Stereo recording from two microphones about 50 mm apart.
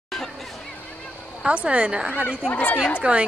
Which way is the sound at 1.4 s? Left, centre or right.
Right.